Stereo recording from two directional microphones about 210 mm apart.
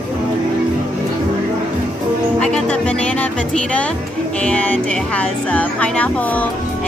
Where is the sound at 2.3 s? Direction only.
5° left (ahead or behind).